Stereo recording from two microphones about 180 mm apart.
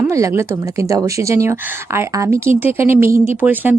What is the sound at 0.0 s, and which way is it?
Speech, 15° right (ahead or behind).